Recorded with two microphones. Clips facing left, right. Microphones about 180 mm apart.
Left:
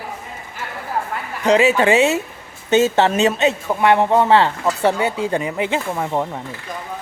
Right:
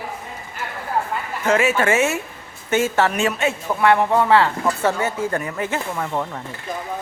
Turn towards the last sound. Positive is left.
turn(degrees=20)  # may be behind; listen again after turning